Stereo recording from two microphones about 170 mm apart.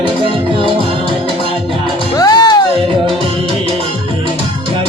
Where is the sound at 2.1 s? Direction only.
25° left (ahead or behind).